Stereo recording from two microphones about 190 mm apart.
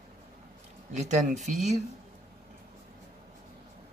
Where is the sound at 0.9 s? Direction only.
35° right (ahead or behind).